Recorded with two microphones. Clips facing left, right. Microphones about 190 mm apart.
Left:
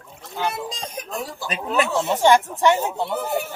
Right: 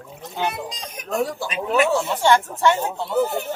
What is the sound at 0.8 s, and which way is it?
Speech, 30° left (ahead or behind).